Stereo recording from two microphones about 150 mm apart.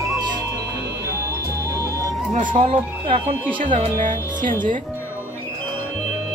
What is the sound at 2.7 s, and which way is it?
Speech, 40° right (ahead or behind).